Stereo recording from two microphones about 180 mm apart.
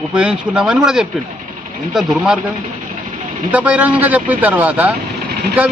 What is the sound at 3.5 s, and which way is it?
A man's voice, 10° right (ahead or behind).